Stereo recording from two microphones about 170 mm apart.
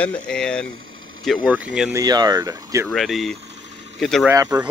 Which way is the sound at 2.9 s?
Centre (ahead or behind).